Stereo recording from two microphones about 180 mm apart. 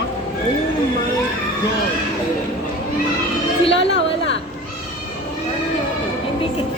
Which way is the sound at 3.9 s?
85° left.